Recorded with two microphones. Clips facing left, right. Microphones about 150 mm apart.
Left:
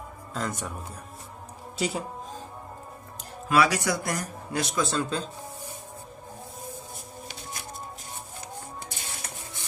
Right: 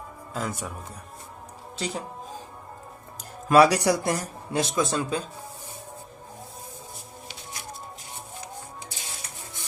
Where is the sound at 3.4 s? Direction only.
40° right (ahead or behind); by 5.2 s 15° right (ahead or behind).